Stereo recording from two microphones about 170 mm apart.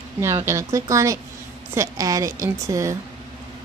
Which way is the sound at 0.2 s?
15° right (ahead or behind).